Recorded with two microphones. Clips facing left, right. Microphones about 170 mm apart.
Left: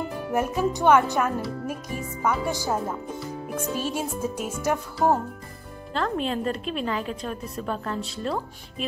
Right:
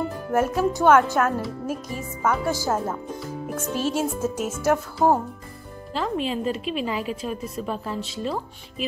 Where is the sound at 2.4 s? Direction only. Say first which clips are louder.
Right 2 dB; 15° left (ahead or behind).